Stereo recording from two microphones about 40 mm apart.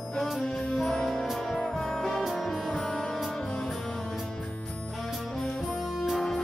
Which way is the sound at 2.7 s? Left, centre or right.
Centre.